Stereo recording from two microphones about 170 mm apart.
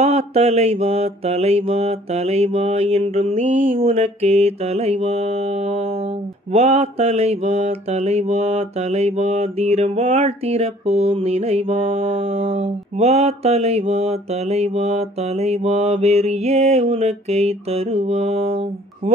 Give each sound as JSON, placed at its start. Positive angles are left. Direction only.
{"t": 0.0, "sound": "mantra", "side_deg": -40}